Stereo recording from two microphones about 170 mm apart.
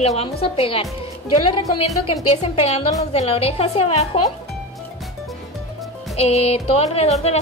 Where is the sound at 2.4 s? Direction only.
35° left (ahead or behind).